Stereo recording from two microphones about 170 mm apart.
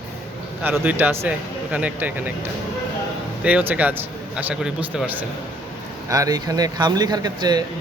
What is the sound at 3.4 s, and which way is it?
Speech, 10° right (ahead or behind).